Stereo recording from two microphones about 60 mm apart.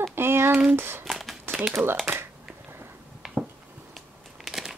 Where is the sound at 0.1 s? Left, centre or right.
Right.